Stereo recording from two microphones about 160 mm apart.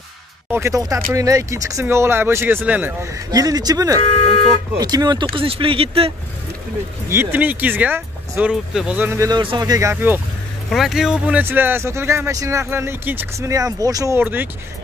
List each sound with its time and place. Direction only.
0.5 s speech: 15° right (ahead or behind)
3.3 s speech: 25° right (ahead or behind)
7.1 s speech: 15° right (ahead or behind)
9.4 s speech: 30° right (ahead or behind); by 10.2 s 15° right (ahead or behind)
10.7 s speech: centre (ahead or behind)